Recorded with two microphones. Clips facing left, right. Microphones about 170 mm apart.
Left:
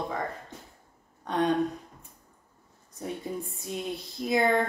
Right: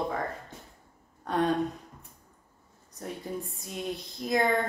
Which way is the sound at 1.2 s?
5° right (ahead or behind).